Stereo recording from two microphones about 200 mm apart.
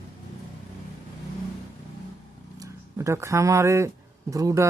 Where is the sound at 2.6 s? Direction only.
15° right (ahead or behind).